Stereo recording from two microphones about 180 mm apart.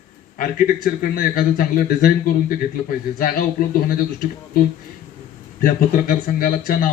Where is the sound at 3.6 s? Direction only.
50° left (ahead or behind).